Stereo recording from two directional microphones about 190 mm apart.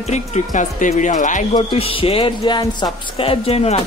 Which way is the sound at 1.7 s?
30° left (ahead or behind).